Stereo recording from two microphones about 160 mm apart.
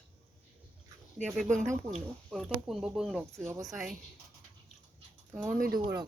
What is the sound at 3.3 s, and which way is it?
Speech, 15° right (ahead or behind).